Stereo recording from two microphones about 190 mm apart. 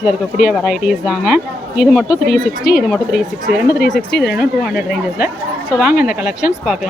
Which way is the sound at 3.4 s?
50° left (ahead or behind).